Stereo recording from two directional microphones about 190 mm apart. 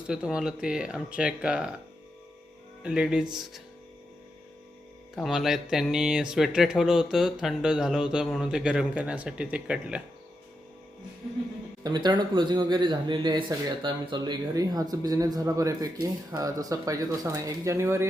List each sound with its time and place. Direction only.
0.1 s speech: 5° right (ahead or behind)
2.8 s speech: 5° right (ahead or behind)
5.1 s speech: centre (ahead or behind)
11.8 s speech: 20° right (ahead or behind)